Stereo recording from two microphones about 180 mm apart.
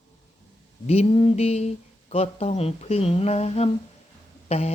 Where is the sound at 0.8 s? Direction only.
35° left (ahead or behind).